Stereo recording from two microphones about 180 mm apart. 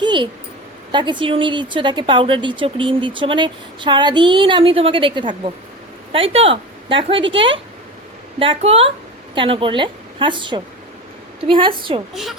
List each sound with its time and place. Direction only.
0.0 s a sound: 25° right (ahead or behind)
0.9 s a woman's voice: 25° right (ahead or behind)
12.1 s a woman's voice: centre (ahead or behind)